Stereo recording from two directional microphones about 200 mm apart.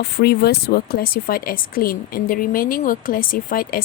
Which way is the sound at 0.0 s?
55° left (ahead or behind).